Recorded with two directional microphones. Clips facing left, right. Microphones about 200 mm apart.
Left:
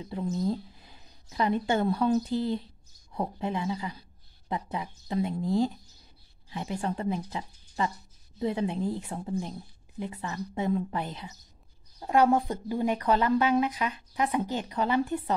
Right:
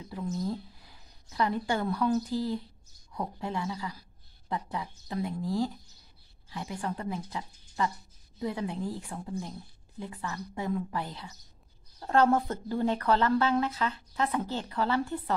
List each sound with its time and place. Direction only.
0.0 s speech: 25° left (ahead or behind)